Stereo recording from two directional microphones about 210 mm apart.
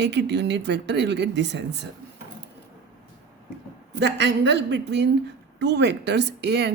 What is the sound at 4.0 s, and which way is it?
A woman's voice, 55° right (ahead or behind).